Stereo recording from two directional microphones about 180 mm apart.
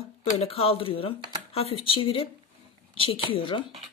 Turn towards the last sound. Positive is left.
turn(degrees=30)  # may be behind; listen again after turning